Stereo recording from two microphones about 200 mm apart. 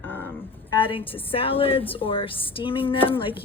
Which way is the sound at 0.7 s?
25° left (ahead or behind).